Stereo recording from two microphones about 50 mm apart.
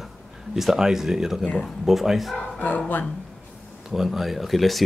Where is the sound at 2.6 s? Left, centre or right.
Left.